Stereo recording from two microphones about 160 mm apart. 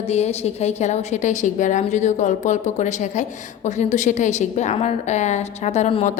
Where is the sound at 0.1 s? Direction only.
40° left (ahead or behind).